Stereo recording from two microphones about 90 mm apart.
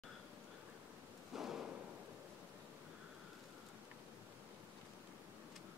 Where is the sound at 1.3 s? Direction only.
5° right (ahead or behind).